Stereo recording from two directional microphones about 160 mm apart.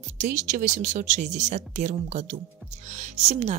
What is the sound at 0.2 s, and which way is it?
Speech, 50° right (ahead or behind).